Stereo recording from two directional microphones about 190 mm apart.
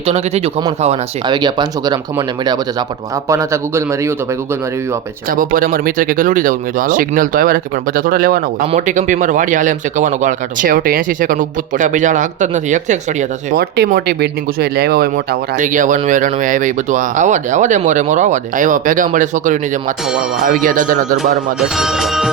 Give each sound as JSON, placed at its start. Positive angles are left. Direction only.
{"t": 0.0, "sound": "speech", "side_deg": -30}
{"t": 5.4, "sound": "speech", "side_deg": -45}
{"t": 13.6, "sound": "speech", "side_deg": -55}
{"t": 21.6, "sound": "speech", "side_deg": 0}